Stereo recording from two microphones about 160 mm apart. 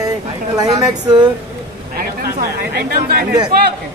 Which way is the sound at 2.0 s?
65° right (ahead or behind).